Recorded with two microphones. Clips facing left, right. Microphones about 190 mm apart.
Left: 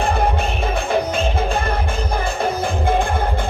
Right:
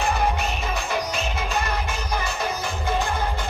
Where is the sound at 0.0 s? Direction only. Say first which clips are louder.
Left 4 dB; 55° left (ahead or behind).